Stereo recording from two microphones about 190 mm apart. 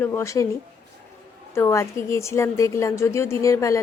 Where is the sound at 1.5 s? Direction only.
15° left (ahead or behind).